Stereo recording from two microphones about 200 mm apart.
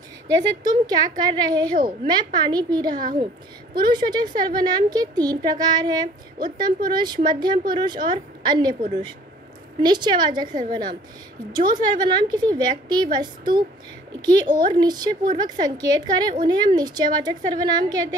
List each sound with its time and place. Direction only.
0.7 s a woman's voice: 20° right (ahead or behind)
9.8 s a woman's voice: 20° right (ahead or behind)
11.5 s a woman's voice: 20° right (ahead or behind)